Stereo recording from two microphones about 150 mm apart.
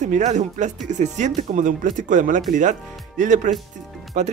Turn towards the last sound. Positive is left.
turn(degrees=-55)  # may be behind; listen again after turning